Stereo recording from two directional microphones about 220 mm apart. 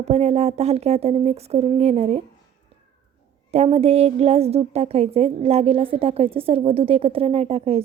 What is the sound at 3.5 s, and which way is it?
A woman's voice, 30° right (ahead or behind).